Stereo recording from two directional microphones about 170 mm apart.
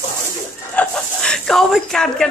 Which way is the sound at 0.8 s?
5° left (ahead or behind).